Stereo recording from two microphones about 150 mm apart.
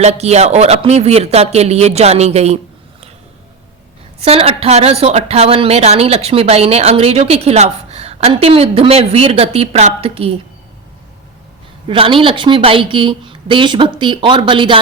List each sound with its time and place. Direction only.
0.0 s speech: 45° right (ahead or behind)
4.2 s speech: 40° right (ahead or behind)
11.9 s a woman's voice: 35° right (ahead or behind)